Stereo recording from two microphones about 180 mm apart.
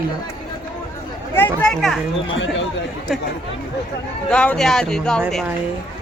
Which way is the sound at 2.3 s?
90° left.